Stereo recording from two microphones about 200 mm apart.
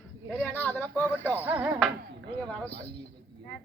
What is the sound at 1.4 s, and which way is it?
Speech, 10° right (ahead or behind).